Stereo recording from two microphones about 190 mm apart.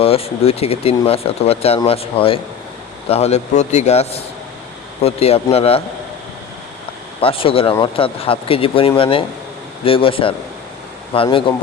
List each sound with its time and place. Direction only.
0.0 s speech: 30° left (ahead or behind)
7.2 s speech: 30° left (ahead or behind)